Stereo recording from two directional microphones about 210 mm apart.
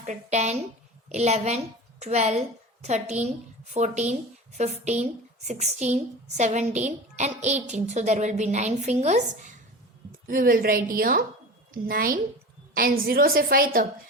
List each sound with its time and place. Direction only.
0.0 s a woman's voice: 35° right (ahead or behind)